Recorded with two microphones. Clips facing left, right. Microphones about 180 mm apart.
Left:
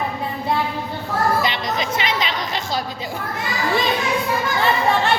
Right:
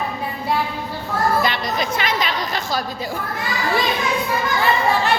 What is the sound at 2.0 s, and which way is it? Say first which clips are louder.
Music: right 1 dB; 20° left (ahead or behind).